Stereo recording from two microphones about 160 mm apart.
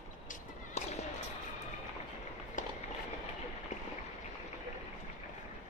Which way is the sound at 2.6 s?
50° left (ahead or behind).